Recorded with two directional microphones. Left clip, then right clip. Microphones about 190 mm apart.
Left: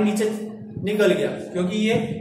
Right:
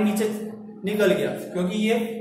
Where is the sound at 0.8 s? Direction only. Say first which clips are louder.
Left 2 dB; 15° left (ahead or behind).